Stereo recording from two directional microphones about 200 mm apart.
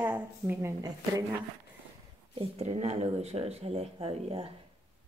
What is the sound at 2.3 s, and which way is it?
Speech, 30° right (ahead or behind).